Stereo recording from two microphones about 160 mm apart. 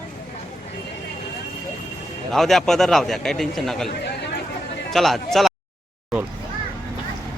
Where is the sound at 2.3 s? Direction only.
Centre (ahead or behind).